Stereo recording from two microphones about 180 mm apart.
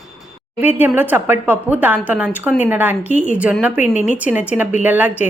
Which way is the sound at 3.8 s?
40° left (ahead or behind).